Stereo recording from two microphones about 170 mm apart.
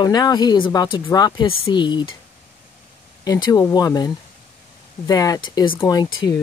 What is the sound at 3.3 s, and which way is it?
Speech, 25° left (ahead or behind).